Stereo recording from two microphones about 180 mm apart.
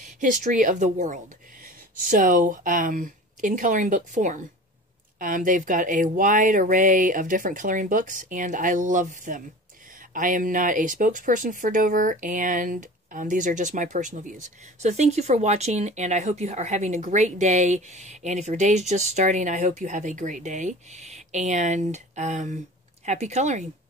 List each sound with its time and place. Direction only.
0.0 s speech: 45° right (ahead or behind)